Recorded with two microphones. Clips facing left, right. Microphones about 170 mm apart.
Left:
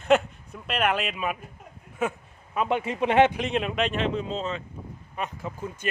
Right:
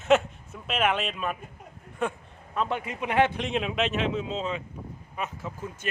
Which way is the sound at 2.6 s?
20° left (ahead or behind).